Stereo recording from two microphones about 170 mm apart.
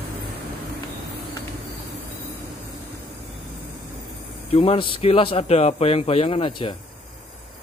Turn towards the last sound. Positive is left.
turn(degrees=30)  # may be behind; listen again after turning